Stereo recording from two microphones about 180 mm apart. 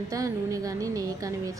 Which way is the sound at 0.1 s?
20° right (ahead or behind).